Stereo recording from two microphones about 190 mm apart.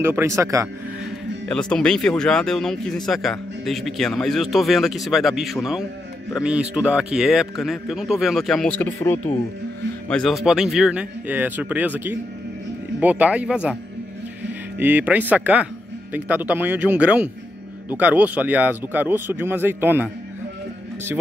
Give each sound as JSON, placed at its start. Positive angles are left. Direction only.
{"t": 0.0, "sound": "speech", "side_deg": -10}
{"t": 1.5, "sound": "speech", "side_deg": 5}
{"t": 14.8, "sound": "speech", "side_deg": -10}